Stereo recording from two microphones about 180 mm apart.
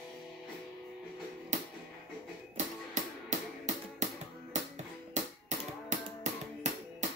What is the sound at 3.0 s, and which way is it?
Music, 40° right (ahead or behind).